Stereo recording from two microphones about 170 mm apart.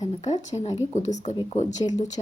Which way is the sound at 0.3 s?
40° left (ahead or behind).